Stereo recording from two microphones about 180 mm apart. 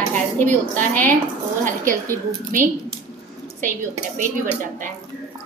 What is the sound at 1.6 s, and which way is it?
Speech, 50° right (ahead or behind).